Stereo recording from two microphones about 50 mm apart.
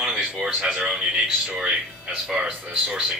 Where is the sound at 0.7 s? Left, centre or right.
Right.